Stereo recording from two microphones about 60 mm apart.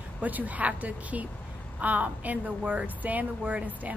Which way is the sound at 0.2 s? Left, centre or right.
Right.